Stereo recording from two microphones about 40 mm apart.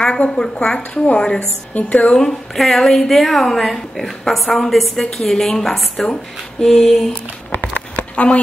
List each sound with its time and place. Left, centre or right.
0.3 s a woman's voice: left
1.7 s speech: left
2.1 s a woman's voice: centre
7.5 s a sound: left